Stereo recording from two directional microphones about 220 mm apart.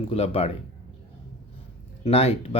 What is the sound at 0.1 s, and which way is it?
Speech, 25° left (ahead or behind).